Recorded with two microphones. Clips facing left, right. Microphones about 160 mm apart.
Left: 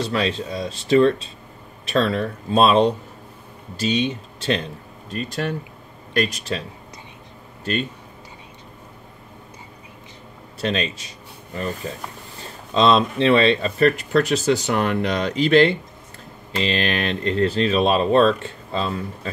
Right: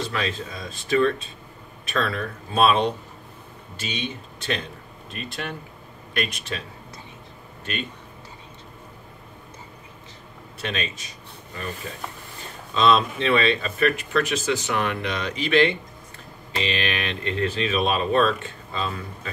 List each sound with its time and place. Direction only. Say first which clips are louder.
0.0 s speech: left 5 dB; 35° left (ahead or behind)
10.6 s speech: left 6 dB; 35° left (ahead or behind)